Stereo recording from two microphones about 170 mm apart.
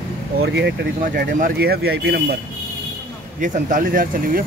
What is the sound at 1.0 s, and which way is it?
Speech, 60° right (ahead or behind).